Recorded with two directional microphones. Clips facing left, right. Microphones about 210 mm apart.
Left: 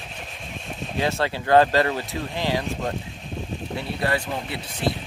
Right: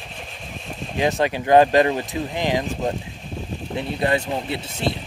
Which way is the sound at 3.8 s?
20° right (ahead or behind).